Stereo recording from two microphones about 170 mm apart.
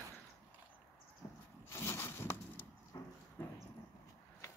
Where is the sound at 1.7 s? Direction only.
15° left (ahead or behind).